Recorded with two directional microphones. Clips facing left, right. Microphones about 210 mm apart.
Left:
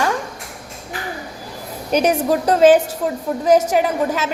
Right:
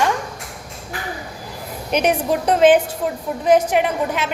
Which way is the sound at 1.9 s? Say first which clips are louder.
Left 2 dB; 40° left (ahead or behind).